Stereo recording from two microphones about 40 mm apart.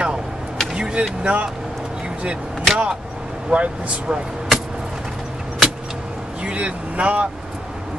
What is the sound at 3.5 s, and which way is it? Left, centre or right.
Speech, right.